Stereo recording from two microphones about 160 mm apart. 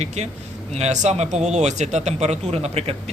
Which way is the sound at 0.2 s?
45° right (ahead or behind).